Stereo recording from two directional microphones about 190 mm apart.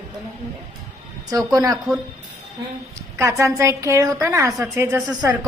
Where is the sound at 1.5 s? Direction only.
15° right (ahead or behind).